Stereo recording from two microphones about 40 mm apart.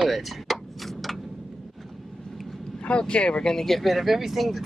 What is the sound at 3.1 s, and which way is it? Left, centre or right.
Speech, left.